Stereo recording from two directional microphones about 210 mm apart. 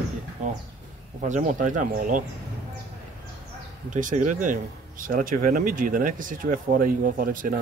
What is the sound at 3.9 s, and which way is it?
A man's voice, 35° right (ahead or behind).